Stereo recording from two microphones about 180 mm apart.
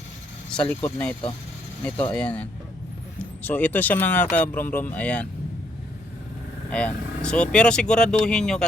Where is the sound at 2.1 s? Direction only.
5° left (ahead or behind).